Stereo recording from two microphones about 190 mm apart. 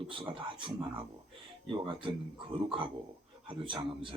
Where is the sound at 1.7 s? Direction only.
25° right (ahead or behind).